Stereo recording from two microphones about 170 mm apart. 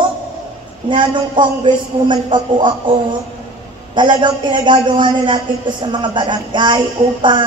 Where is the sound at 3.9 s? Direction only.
25° right (ahead or behind).